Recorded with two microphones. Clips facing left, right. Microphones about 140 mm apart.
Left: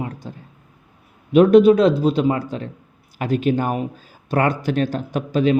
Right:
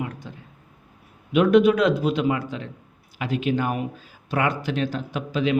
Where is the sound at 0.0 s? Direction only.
35° left (ahead or behind).